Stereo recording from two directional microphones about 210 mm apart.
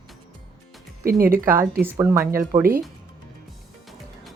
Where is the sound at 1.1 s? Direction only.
45° right (ahead or behind).